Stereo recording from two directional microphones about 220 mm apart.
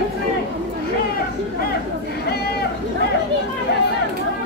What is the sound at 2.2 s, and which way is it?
Run, 45° left (ahead or behind).